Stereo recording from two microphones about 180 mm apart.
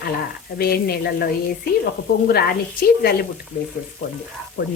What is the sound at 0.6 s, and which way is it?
Speech, 60° left (ahead or behind).